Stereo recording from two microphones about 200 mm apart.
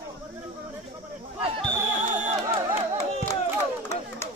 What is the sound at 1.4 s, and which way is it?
Basketball bounce, 30° right (ahead or behind).